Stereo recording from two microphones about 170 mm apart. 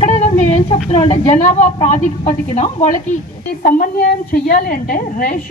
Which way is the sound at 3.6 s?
60° left (ahead or behind).